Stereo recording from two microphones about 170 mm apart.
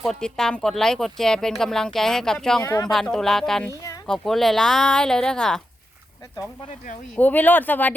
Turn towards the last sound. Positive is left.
turn(degrees=10)  # may be behind; listen again after turning